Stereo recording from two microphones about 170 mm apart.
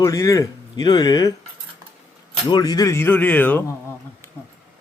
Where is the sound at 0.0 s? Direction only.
20° left (ahead or behind).